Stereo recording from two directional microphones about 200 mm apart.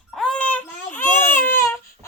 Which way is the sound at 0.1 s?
5° left (ahead or behind).